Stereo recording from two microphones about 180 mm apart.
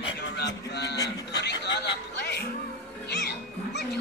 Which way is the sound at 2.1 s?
65° left (ahead or behind).